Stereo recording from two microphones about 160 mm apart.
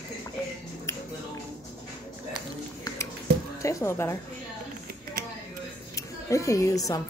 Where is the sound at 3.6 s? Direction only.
20° left (ahead or behind).